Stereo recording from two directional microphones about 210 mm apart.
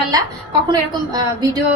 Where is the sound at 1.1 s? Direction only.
20° right (ahead or behind).